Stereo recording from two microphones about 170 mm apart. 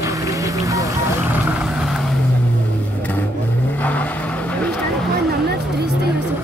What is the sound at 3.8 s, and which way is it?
Vehicle, 10° left (ahead or behind).